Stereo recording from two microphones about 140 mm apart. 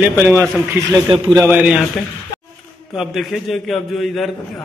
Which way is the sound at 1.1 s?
40° right (ahead or behind).